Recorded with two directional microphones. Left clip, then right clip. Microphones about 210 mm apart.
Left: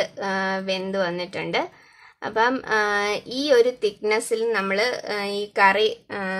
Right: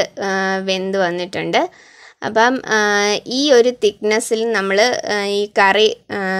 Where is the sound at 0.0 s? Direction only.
35° right (ahead or behind).